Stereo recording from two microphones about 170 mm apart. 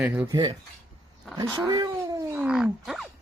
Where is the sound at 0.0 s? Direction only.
10° right (ahead or behind).